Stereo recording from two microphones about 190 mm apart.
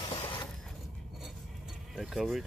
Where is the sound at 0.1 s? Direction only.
20° left (ahead or behind).